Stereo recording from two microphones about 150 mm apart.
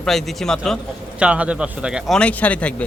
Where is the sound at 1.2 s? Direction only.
10° right (ahead or behind); by 2.7 s 10° left (ahead or behind).